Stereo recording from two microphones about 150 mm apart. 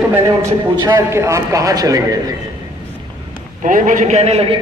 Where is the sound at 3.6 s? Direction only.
60° right (ahead or behind); by 4.5 s 45° right (ahead or behind).